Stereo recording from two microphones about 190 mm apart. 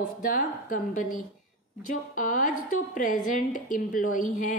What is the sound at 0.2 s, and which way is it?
A woman's voice, 45° left (ahead or behind).